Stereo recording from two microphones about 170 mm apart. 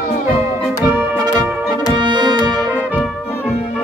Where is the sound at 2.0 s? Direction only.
25° right (ahead or behind).